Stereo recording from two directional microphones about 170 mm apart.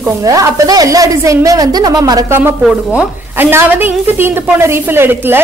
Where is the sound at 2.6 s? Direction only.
Centre (ahead or behind).